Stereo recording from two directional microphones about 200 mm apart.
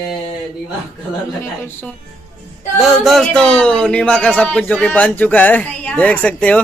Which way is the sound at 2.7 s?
Centre (ahead or behind).